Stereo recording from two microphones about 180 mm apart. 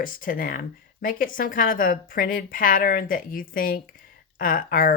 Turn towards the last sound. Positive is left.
turn(degrees=50)  # may be behind; listen again after turning